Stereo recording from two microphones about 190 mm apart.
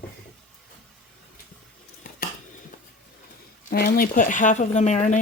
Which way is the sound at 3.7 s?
55° left (ahead or behind).